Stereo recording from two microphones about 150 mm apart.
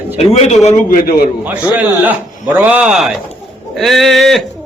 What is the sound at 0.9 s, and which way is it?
Speech, 90° left.